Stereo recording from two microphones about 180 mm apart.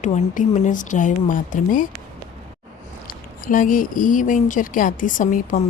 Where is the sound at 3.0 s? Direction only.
50° left (ahead or behind).